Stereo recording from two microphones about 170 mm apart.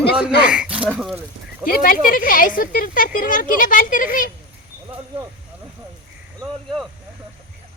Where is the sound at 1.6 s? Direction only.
55° left (ahead or behind).